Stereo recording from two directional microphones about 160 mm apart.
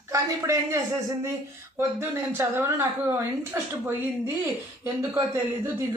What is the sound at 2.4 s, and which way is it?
Speech, 15° right (ahead or behind).